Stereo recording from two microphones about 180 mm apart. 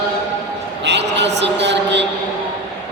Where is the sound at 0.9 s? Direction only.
75° right (ahead or behind).